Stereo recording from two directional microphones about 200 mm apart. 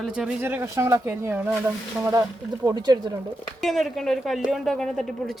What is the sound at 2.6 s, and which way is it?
Speech, 20° right (ahead or behind).